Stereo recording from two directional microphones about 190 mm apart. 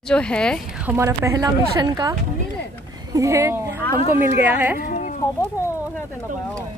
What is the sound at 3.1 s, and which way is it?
A woman's voice, 15° right (ahead or behind).